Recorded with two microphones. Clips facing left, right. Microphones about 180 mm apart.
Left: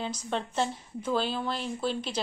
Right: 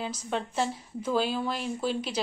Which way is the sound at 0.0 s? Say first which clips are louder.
Even; 5° right (ahead or behind).